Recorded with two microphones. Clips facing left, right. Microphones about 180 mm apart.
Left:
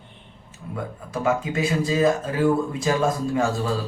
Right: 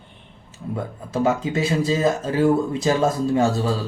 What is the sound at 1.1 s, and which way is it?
Speech, 30° right (ahead or behind).